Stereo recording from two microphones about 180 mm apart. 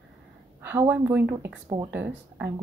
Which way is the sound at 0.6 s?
10° right (ahead or behind).